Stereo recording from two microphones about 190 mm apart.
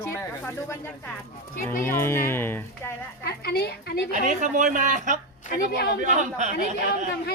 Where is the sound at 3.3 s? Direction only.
55° left (ahead or behind).